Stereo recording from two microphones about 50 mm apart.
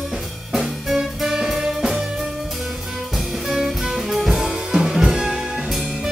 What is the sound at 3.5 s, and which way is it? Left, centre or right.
Music, centre.